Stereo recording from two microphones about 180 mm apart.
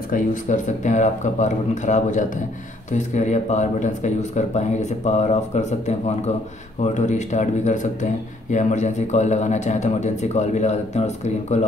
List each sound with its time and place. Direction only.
0.1 s speech: 45° left (ahead or behind)